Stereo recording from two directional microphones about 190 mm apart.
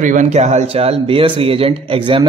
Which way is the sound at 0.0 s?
40° right (ahead or behind).